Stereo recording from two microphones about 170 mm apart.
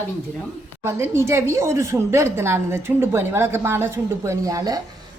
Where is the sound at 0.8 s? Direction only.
15° right (ahead or behind).